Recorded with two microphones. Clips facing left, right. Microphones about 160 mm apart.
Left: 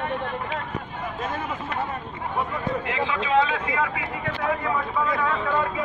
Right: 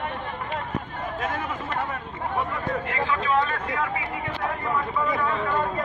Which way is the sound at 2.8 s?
90° left.